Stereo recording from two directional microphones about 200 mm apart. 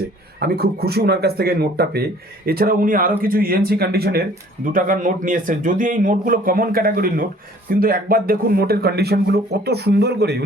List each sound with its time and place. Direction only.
0.3 s speech: 50° right (ahead or behind)